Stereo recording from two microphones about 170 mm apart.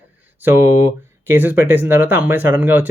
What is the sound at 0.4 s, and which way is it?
Speech, 15° right (ahead or behind).